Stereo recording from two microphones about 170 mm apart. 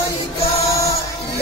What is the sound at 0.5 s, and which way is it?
Music, 20° left (ahead or behind).